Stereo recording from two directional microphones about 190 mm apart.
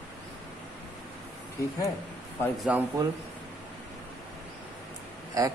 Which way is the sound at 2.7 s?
5° right (ahead or behind).